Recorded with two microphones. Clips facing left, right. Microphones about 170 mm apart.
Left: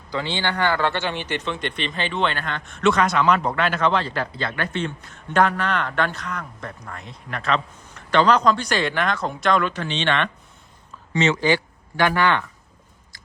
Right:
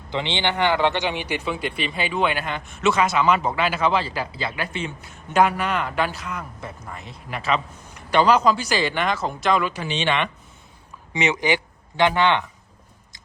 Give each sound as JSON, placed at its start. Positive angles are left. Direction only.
{"t": 0.1, "sound": "a man's voice", "side_deg": -20}